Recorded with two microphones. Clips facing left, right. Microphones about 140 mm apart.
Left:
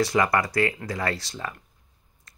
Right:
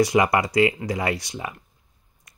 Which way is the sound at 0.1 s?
20° right (ahead or behind).